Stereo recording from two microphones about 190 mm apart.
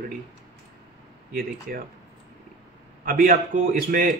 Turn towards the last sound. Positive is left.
turn(degrees=-45)  # may be behind; listen again after turning